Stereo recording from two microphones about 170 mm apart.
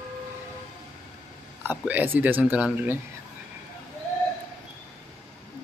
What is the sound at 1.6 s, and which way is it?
Speech, 10° right (ahead or behind).